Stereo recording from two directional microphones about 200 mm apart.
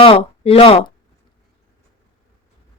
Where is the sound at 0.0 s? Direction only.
30° left (ahead or behind).